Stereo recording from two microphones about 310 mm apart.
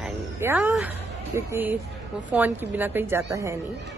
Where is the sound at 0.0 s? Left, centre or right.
Centre.